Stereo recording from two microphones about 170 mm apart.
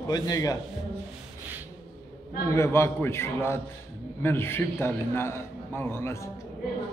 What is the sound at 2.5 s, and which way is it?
A man's voice, 15° left (ahead or behind).